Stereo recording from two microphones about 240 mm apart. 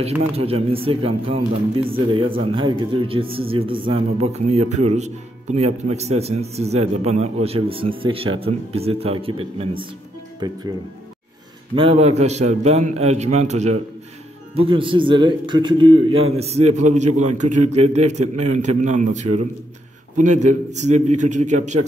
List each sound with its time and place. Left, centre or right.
0.7 s speech: right
11.7 s speech: right